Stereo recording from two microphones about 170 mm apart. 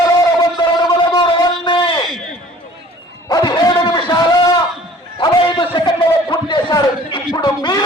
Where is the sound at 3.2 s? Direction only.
25° left (ahead or behind).